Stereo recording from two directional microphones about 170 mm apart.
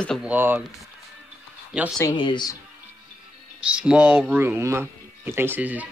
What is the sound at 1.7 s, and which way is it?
Speech, 5° right (ahead or behind).